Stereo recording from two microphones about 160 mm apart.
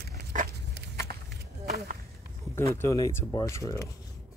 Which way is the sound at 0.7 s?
90° right.